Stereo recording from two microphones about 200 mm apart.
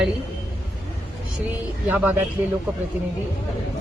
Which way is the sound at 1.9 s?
10° right (ahead or behind).